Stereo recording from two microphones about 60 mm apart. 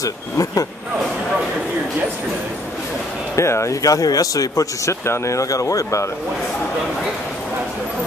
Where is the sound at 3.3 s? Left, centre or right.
Left.